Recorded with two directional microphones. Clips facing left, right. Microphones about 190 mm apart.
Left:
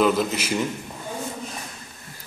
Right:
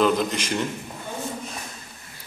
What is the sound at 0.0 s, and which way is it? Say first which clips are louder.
Speech: left 1 dB; 5° left (ahead or behind).